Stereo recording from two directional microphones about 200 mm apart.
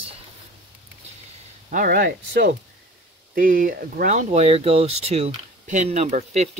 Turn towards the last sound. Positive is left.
turn(degrees=-35)  # may be behind; listen again after turning